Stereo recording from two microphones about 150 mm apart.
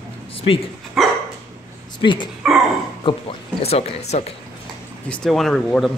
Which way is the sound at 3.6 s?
45° left (ahead or behind).